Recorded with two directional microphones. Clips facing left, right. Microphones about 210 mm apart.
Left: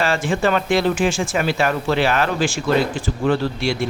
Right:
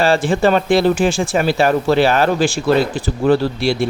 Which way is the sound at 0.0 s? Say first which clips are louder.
Right 5 dB; 35° right (ahead or behind).